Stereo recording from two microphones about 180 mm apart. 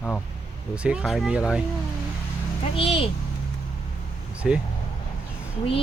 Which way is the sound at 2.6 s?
30° left (ahead or behind).